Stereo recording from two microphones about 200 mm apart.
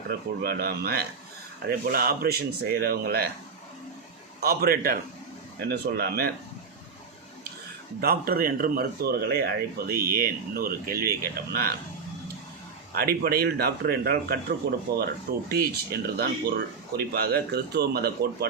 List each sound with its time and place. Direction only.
0.1 s a man's voice: 50° right (ahead or behind)
4.4 s a man's voice: 50° right (ahead or behind)
8.0 s a man's voice: 50° right (ahead or behind)
12.9 s a man's voice: 50° right (ahead or behind)